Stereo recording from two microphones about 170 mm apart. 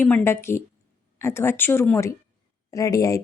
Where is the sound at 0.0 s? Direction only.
15° left (ahead or behind).